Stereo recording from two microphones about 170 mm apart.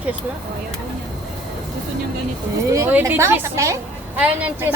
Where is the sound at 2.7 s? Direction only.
15° right (ahead or behind).